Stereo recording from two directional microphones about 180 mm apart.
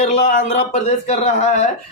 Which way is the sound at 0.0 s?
40° left (ahead or behind).